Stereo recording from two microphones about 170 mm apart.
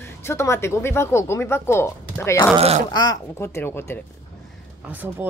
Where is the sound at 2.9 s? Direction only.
25° left (ahead or behind).